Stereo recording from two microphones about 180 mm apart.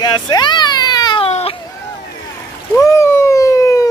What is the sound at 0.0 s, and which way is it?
Baby cry, 25° left (ahead or behind).